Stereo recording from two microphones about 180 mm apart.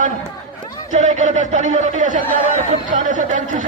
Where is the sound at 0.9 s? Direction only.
40° right (ahead or behind).